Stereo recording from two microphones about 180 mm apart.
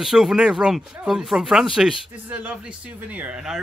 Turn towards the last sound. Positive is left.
turn(degrees=-5)  # may be behind; listen again after turning